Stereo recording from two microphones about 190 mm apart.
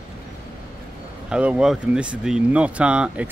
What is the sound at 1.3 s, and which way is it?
A man's voice, 5° right (ahead or behind).